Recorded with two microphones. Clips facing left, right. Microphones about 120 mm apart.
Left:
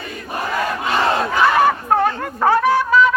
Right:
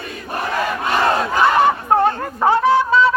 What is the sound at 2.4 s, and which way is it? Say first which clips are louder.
Fowl: right 1 dB; 20° right (ahead or behind).